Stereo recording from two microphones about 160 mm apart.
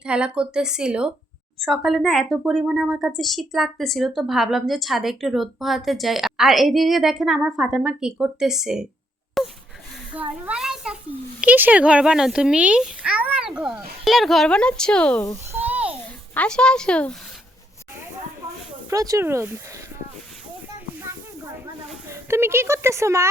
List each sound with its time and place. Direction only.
0.0 s speech: 5° right (ahead or behind)
9.4 s wail: centre (ahead or behind)
10.1 s a child's voice: 10° right (ahead or behind)
15.5 s a sound: 10° right (ahead or behind)
16.3 s speech: 5° left (ahead or behind)
18.9 s speech: 20° right (ahead or behind)
22.1 s speech: 15° right (ahead or behind)